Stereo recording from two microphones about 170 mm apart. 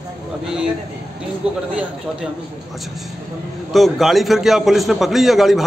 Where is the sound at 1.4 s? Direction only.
35° right (ahead or behind).